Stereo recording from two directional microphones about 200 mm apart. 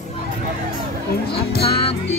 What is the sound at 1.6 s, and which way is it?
Music, 30° left (ahead or behind).